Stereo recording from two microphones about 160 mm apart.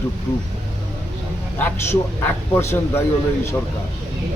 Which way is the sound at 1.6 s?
10° left (ahead or behind).